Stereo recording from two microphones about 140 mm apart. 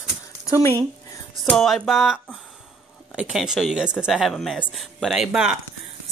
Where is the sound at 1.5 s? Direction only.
Centre (ahead or behind).